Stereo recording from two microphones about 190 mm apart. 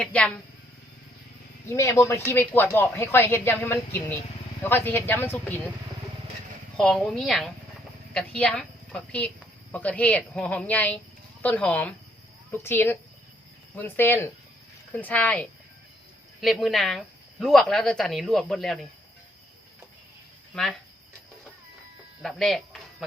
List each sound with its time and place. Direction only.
0.0 s speech: 5° left (ahead or behind)
1.6 s speech: 15° left (ahead or behind)
6.7 s a woman's voice: 5° left (ahead or behind)
20.5 s speech: centre (ahead or behind)
22.2 s a sound: centre (ahead or behind)